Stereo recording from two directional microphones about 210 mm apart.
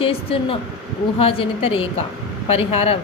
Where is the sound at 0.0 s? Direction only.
25° left (ahead or behind).